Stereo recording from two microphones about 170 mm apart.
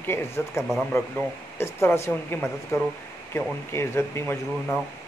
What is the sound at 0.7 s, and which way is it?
Speech, centre (ahead or behind).